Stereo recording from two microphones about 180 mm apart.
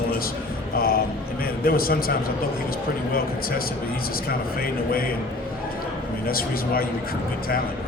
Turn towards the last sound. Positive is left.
turn(degrees=55)  # may be behind; listen again after turning